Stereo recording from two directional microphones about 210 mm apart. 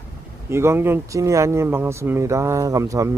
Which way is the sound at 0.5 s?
10° right (ahead or behind).